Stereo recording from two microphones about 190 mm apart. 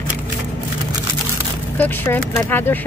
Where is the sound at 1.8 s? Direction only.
10° left (ahead or behind).